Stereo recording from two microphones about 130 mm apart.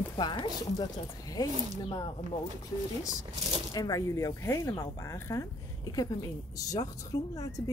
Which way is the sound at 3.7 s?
25° left (ahead or behind).